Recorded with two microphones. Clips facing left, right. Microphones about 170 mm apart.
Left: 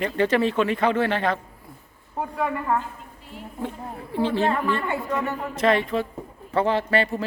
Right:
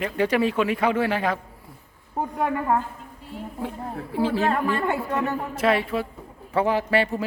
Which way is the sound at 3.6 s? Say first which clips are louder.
Even; 10° right (ahead or behind).